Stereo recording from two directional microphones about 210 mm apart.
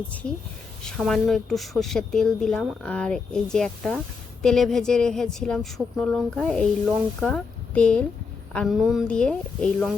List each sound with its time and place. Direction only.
0.9 s a woman's voice: centre (ahead or behind)